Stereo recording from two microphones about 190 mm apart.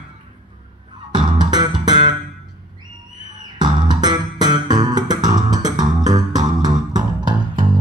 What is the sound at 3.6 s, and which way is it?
Music, 20° right (ahead or behind).